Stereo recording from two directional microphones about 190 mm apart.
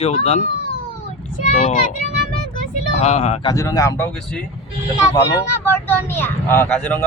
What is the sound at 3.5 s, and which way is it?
Speech, 15° left (ahead or behind).